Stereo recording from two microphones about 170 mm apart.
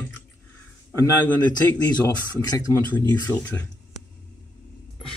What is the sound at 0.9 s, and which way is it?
Speech, 15° left (ahead or behind).